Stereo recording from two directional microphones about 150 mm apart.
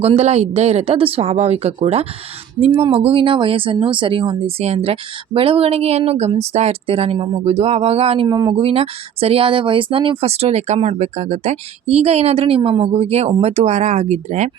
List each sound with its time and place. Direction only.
0.0 s speech: 45° right (ahead or behind)
8.3 s speech: 25° right (ahead or behind)
8.5 s speech: 40° right (ahead or behind)